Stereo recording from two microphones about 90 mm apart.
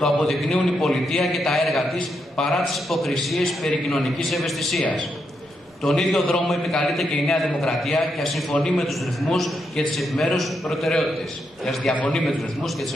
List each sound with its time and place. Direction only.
0.0 s a man's voice: 5° left (ahead or behind)
5.9 s a man's voice: 5° left (ahead or behind)
11.9 s a man's voice: 15° left (ahead or behind)